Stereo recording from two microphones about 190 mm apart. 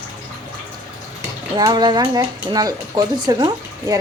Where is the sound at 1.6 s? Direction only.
20° right (ahead or behind).